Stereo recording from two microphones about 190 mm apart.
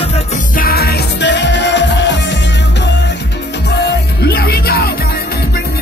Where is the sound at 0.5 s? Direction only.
55° left (ahead or behind).